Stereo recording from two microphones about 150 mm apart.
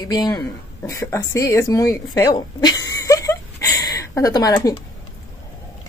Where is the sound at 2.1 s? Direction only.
25° left (ahead or behind).